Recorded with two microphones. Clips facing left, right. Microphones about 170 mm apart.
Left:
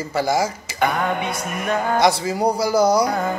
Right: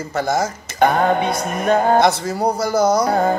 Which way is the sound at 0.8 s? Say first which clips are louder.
Right 6 dB; 35° right (ahead or behind).